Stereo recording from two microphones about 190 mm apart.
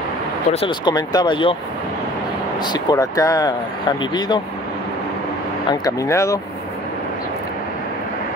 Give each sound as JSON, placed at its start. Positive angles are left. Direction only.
{"t": 0.5, "sound": "speech", "side_deg": 30}
{"t": 2.6, "sound": "speech", "side_deg": 20}
{"t": 5.7, "sound": "speech", "side_deg": 20}